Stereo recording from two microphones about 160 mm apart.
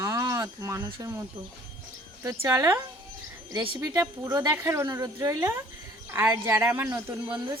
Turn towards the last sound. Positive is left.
turn(degrees=-10)  # may be behind; listen again after turning